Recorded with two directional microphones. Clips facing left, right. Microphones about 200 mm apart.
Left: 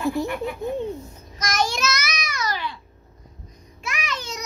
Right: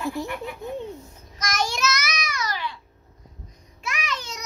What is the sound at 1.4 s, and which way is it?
Child singing, 35° left (ahead or behind).